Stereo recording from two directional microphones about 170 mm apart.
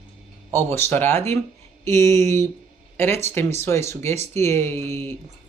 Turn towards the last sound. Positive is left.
turn(degrees=15)  # may be behind; listen again after turning